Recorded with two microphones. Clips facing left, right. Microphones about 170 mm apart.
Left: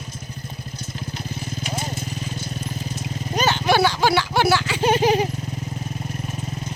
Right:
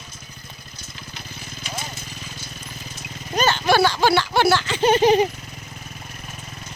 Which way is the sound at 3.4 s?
15° left (ahead or behind).